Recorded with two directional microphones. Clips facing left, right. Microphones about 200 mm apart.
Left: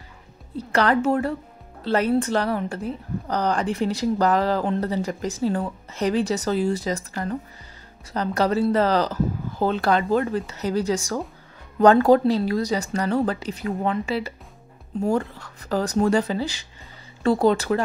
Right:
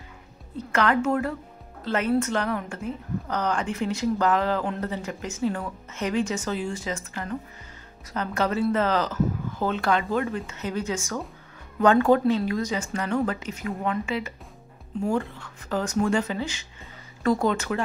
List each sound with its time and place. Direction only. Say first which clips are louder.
0.6 s a woman's voice: left 3 dB; 35° left (ahead or behind)